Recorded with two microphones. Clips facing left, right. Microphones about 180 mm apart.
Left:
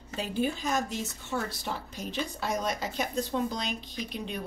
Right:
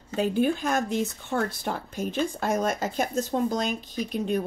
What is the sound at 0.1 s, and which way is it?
A woman's voice, 55° right (ahead or behind).